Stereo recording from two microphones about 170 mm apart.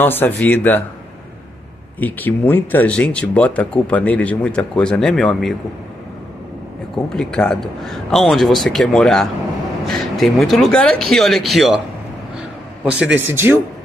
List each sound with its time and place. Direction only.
0.0 s speech: 10° left (ahead or behind)
2.0 s speech: 10° left (ahead or behind)
7.2 s a man's voice: 5° left (ahead or behind)
13.0 s speech: 10° right (ahead or behind)